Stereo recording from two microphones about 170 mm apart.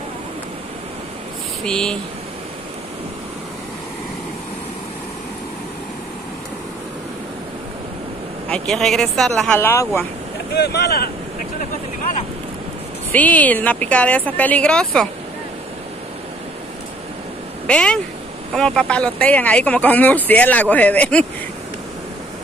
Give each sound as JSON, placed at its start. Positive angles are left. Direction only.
{"t": 1.6, "sound": "speech", "side_deg": 5}
{"t": 8.5, "sound": "speech", "side_deg": 5}
{"t": 9.6, "sound": "speech", "side_deg": 15}
{"t": 10.5, "sound": "speech", "side_deg": 75}
{"t": 13.1, "sound": "speech", "side_deg": 10}
{"t": 17.6, "sound": "speech", "side_deg": 5}